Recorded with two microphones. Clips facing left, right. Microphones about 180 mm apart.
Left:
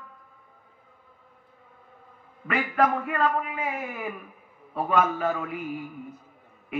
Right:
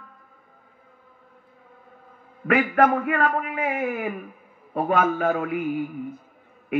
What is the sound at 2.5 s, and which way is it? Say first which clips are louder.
A man's voice: right 5 dB; 60° right (ahead or behind).